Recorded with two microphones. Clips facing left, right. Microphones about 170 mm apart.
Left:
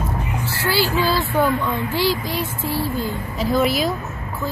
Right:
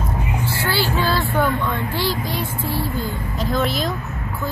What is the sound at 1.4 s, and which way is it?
Speech, 5° left (ahead or behind).